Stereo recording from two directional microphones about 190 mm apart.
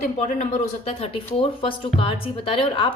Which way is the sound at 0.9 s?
30° left (ahead or behind).